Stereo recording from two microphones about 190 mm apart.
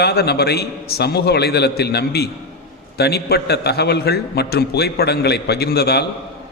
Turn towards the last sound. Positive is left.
turn(degrees=55)  # may be behind; listen again after turning